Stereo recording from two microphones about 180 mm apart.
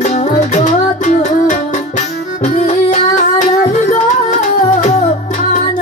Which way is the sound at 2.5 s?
45° left (ahead or behind).